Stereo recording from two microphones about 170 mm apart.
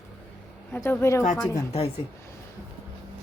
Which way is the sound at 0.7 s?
15° left (ahead or behind).